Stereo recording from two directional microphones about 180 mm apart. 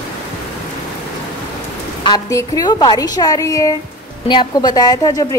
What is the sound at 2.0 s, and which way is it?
A woman's voice, 20° left (ahead or behind).